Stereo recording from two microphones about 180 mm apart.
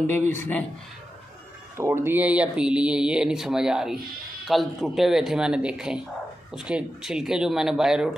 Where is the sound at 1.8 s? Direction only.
15° right (ahead or behind).